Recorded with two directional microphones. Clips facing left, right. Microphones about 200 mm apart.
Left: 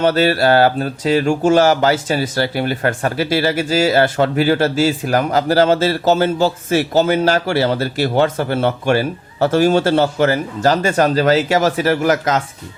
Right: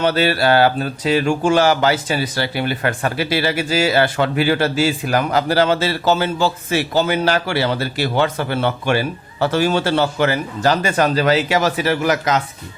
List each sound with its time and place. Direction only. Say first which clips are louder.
0.0 s speech: left 3 dB; 45° left (ahead or behind)